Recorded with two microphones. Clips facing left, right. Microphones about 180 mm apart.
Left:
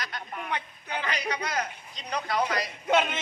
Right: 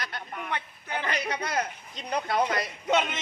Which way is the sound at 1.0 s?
55° right (ahead or behind).